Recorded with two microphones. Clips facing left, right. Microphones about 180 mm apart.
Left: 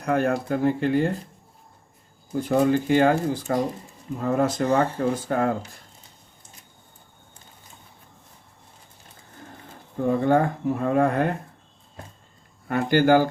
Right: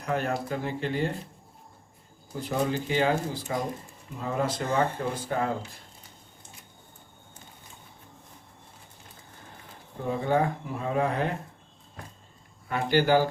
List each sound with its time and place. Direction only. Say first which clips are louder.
0.0 s speech: left 6 dB; 50° left (ahead or behind)
2.4 s speech: left 8 dB; 50° left (ahead or behind)
10.0 s speech: left 6 dB; 55° left (ahead or behind)
12.6 s speech: left 5 dB; 50° left (ahead or behind)